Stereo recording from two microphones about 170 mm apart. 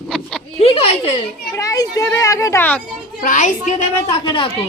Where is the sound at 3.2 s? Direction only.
50° left (ahead or behind).